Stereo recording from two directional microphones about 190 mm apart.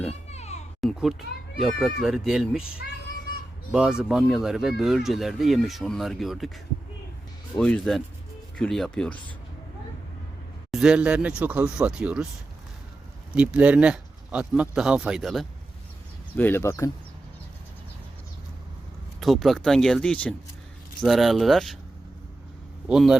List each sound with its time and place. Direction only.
0.1 s music: 35° left (ahead or behind)
0.8 s speech: centre (ahead or behind)
3.7 s speech: 5° right (ahead or behind)
7.6 s speech: 5° left (ahead or behind)
10.7 s speech: 5° right (ahead or behind)
13.3 s speech: 5° right (ahead or behind)
16.3 s speech: 10° left (ahead or behind)
19.2 s speech: centre (ahead or behind)
22.9 s speech: 5° right (ahead or behind)